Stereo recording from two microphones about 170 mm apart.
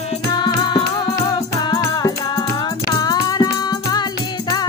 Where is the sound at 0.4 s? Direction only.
25° left (ahead or behind).